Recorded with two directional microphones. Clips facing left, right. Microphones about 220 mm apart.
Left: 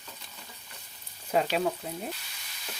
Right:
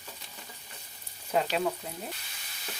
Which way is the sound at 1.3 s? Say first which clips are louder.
Left 2 dB; 5° left (ahead or behind).